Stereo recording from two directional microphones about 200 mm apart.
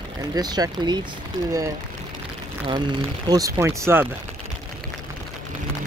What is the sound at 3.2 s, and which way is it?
Speech, 20° right (ahead or behind).